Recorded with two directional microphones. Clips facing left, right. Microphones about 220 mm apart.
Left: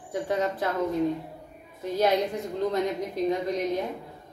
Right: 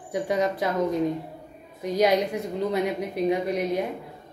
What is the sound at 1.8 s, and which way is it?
A woman's voice, 15° right (ahead or behind).